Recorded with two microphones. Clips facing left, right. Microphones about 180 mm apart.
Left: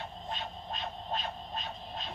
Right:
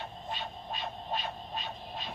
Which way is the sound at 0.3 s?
5° right (ahead or behind).